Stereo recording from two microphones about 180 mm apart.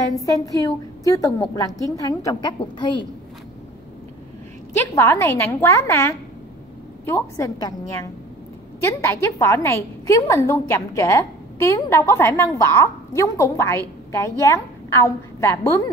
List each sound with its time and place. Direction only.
0.2 s a woman's voice: 20° left (ahead or behind)
4.7 s a woman's voice: 15° left (ahead or behind)